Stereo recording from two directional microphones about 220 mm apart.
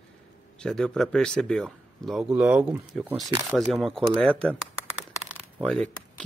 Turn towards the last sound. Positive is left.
turn(degrees=5)  # may be behind; listen again after turning